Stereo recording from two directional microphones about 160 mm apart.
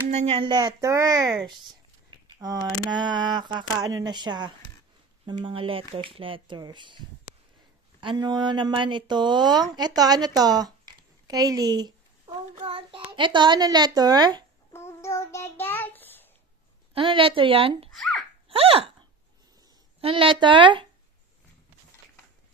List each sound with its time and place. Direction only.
0.1 s speech: 45° right (ahead or behind)
0.4 s speech: 25° right (ahead or behind)
8.0 s speech: 30° right (ahead or behind)
14.7 s child singing: 15° left (ahead or behind)
16.9 s speech: 35° right (ahead or behind)
17.9 s a child's voice: centre (ahead or behind)
18.5 s a sound: 35° right (ahead or behind)
20.0 s speech: 35° right (ahead or behind)